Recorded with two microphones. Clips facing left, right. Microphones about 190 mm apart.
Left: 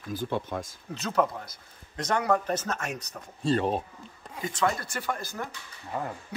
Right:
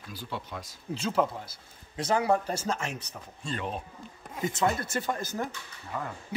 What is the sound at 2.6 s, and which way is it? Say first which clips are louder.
Speech: right 1 dB; 25° right (ahead or behind).